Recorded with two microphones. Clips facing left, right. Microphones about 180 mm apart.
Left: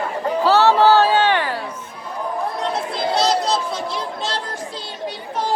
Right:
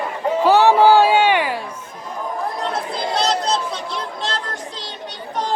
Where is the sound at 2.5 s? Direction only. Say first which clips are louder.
Left 1 dB; centre (ahead or behind).